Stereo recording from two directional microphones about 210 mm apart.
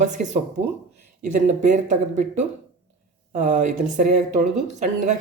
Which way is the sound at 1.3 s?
35° right (ahead or behind).